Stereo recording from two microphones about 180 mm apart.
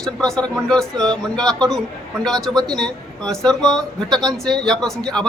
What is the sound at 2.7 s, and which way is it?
Speech, 5° left (ahead or behind).